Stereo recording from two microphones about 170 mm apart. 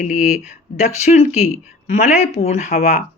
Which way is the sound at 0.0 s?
45° left (ahead or behind).